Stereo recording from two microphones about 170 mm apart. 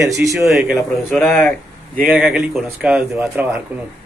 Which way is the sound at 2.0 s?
5° right (ahead or behind).